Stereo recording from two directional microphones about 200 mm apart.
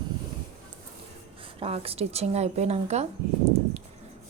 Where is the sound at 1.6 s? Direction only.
30° right (ahead or behind).